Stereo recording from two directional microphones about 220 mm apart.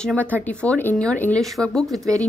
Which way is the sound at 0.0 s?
5° left (ahead or behind).